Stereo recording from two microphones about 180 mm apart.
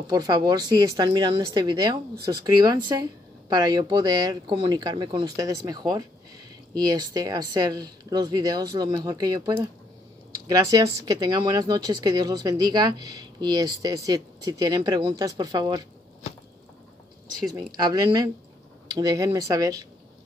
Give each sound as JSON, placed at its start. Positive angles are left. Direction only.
{"t": 0.0, "sound": "speech", "side_deg": -20}
{"t": 17.7, "sound": "speech", "side_deg": -20}